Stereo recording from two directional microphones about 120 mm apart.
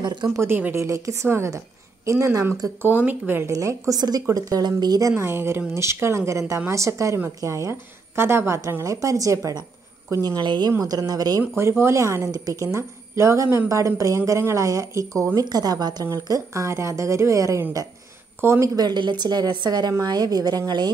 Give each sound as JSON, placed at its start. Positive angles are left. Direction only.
{"t": 0.0, "sound": "speech", "side_deg": -40}
{"t": 0.3, "sound": "a woman's voice", "side_deg": -20}
{"t": 5.1, "sound": "a woman's voice", "side_deg": -20}
{"t": 18.8, "sound": "a woman's voice", "side_deg": -35}